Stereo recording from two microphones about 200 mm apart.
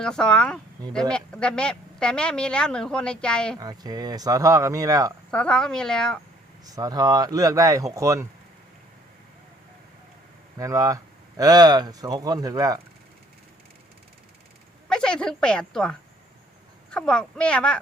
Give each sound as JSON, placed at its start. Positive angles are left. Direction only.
{"t": 0.0, "sound": "speech", "side_deg": 5}
{"t": 3.6, "sound": "speech", "side_deg": -20}
{"t": 5.3, "sound": "speech", "side_deg": 5}
{"t": 6.7, "sound": "speech", "side_deg": -20}
{"t": 10.6, "sound": "speech", "side_deg": -15}
{"t": 14.8, "sound": "speech", "side_deg": 5}